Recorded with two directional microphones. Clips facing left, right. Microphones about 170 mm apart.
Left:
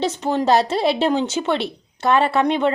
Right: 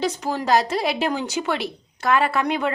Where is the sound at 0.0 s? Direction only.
25° left (ahead or behind).